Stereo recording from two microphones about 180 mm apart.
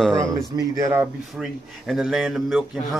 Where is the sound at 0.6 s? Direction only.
20° right (ahead or behind).